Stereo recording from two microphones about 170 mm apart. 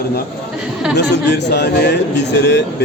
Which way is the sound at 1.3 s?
85° left.